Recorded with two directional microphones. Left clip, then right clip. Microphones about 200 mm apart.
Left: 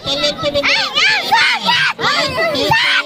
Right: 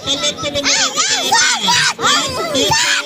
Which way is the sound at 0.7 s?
15° left (ahead or behind).